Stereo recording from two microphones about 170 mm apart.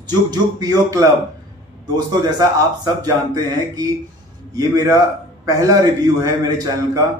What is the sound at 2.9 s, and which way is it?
Speech, 20° right (ahead or behind).